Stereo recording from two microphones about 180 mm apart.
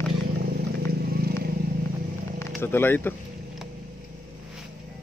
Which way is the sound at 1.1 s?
60° right (ahead or behind).